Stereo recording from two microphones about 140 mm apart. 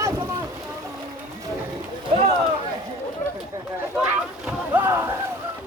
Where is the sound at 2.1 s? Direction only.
50° right (ahead or behind).